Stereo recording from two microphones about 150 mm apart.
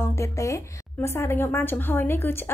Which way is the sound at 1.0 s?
15° left (ahead or behind).